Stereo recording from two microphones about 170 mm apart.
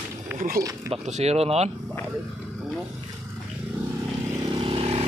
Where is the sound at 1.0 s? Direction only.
40° right (ahead or behind).